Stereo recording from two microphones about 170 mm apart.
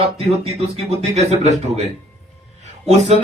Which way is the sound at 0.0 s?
35° right (ahead or behind).